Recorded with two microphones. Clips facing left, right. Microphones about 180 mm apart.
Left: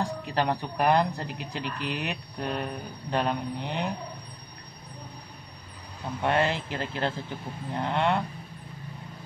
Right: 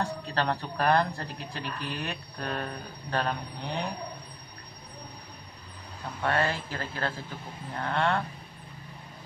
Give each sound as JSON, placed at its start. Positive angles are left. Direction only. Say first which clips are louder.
{"t": 0.0, "sound": "speech", "louder": "left 2 dB", "side_deg": 15}
{"t": 6.2, "sound": "speech", "louder": "left 2 dB", "side_deg": 20}